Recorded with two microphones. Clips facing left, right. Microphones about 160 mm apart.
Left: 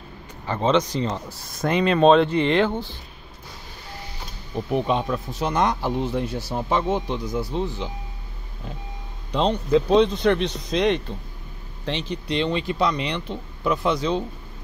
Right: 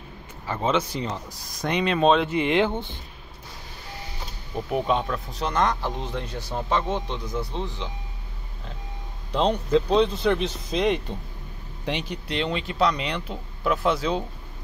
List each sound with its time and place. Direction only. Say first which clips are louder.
0.7 s speech: left 4 dB; 10° right (ahead or behind)
1.5 s speech: left 4 dB; centre (ahead or behind)
2.3 s speech: left 2 dB; 15° right (ahead or behind)
4.6 s a man's voice: left 1 dB; 5° right (ahead or behind)
9.3 s speech: left 1 dB; centre (ahead or behind)